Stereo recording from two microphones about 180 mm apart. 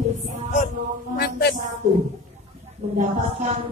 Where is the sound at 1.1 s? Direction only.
55° left (ahead or behind).